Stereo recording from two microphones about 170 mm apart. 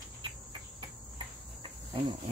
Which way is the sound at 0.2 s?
30° right (ahead or behind).